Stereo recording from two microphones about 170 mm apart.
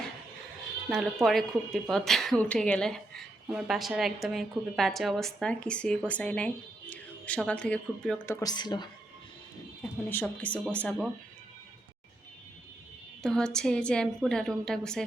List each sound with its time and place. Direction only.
0.9 s a woman's voice: centre (ahead or behind)
8.4 s a woman's voice: 25° left (ahead or behind)
10.1 s speech: 10° left (ahead or behind)
13.2 s a woman's voice: 5° left (ahead or behind)